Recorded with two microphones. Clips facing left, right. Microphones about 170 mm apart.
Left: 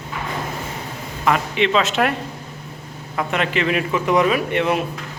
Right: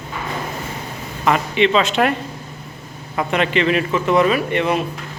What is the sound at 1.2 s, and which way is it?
A man's voice, centre (ahead or behind).